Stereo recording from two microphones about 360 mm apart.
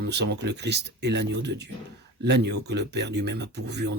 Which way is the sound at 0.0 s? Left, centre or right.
Right.